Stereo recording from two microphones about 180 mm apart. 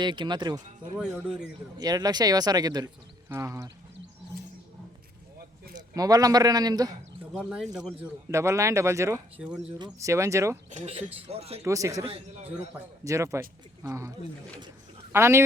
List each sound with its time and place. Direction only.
0.0 s speech: 25° right (ahead or behind)
0.9 s speech: centre (ahead or behind)
1.8 s speech: 20° right (ahead or behind)
5.7 s a man's voice: 20° right (ahead or behind)
7.3 s speech: centre (ahead or behind)
8.3 s speech: 15° right (ahead or behind)
10.8 s speech: 35° right (ahead or behind)
11.6 s speech: 15° right (ahead or behind)
13.1 s speech: 15° right (ahead or behind)
15.1 s speech: 15° right (ahead or behind)